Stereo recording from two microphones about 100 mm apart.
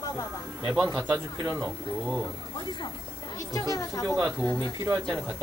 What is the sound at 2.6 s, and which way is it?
Speech, 50° left (ahead or behind).